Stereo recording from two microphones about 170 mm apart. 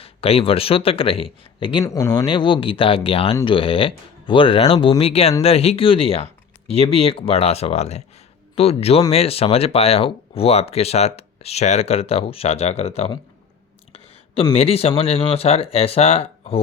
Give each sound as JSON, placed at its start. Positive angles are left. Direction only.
{"t": 0.0, "sound": "speech", "side_deg": 35}
{"t": 1.8, "sound": "speech", "side_deg": 20}
{"t": 14.5, "sound": "speech", "side_deg": 35}